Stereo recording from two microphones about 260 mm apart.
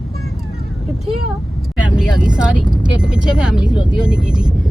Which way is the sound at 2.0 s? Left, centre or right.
Centre.